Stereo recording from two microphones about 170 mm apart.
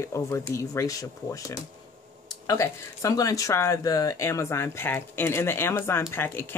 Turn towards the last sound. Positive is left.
turn(degrees=15)  # may be behind; listen again after turning